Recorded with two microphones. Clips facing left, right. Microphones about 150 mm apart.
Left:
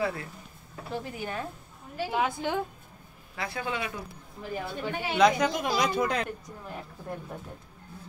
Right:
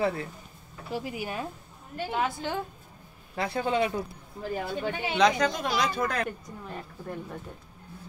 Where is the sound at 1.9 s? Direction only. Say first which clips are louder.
Left 1 dB; 5° left (ahead or behind).